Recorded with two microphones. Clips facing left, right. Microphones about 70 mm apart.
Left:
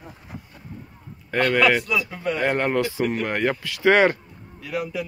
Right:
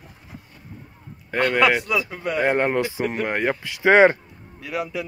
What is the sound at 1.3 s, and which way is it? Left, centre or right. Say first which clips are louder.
Speech: even; centre.